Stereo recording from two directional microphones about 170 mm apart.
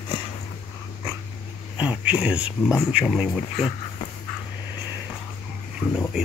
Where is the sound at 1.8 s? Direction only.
10° right (ahead or behind).